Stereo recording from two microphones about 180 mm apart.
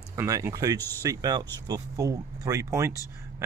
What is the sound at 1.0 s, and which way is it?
Speech, 20° right (ahead or behind).